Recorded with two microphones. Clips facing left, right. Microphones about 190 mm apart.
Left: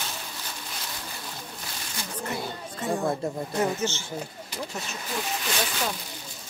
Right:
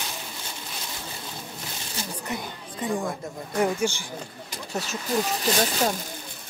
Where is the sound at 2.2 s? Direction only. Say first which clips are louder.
Left 1 dB; 15° right (ahead or behind).